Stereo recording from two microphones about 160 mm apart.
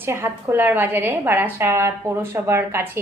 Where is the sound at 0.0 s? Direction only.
15° right (ahead or behind).